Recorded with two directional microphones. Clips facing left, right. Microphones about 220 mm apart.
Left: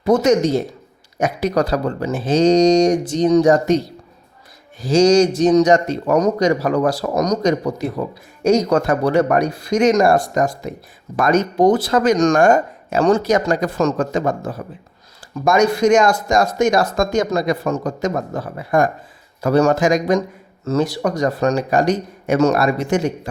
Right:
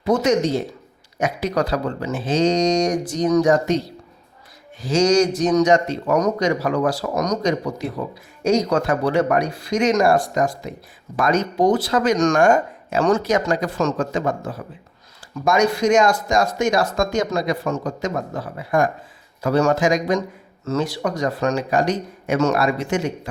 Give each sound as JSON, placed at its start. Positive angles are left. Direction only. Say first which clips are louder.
{"t": 0.0, "sound": "speech", "louder": "left 4 dB", "side_deg": 45}
{"t": 3.4, "sound": "speech", "louder": "left 4 dB", "side_deg": 35}
{"t": 4.8, "sound": "a man's voice", "louder": "left 4 dB", "side_deg": 35}
{"t": 12.1, "sound": "speech", "louder": "left 2 dB", "side_deg": 35}